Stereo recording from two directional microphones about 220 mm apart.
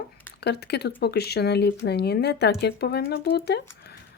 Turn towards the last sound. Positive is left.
turn(degrees=50)  # may be behind; listen again after turning